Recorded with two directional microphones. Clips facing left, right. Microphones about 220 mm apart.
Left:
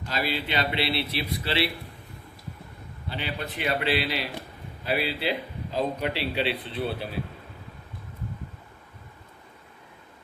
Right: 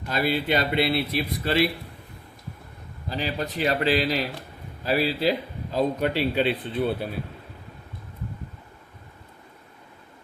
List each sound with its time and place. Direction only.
0.1 s a man's voice: 50° right (ahead or behind)
3.1 s a man's voice: 40° right (ahead or behind)